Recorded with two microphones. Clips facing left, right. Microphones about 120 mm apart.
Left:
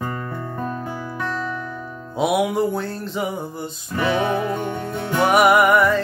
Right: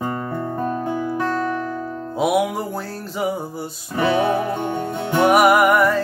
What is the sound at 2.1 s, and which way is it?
Music, centre (ahead or behind).